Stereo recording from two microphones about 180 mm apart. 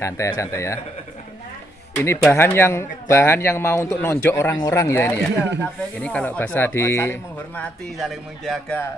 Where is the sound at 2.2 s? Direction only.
10° left (ahead or behind).